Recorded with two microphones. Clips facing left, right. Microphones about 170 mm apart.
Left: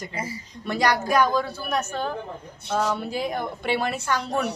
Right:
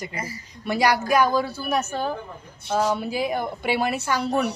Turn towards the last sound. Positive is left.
turn(degrees=-5)  # may be behind; listen again after turning